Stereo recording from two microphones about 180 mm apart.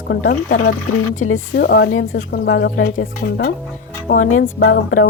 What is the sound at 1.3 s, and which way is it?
A woman's voice, 65° left (ahead or behind).